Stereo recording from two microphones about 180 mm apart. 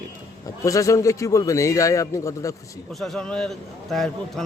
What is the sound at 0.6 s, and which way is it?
A man's voice, 20° left (ahead or behind).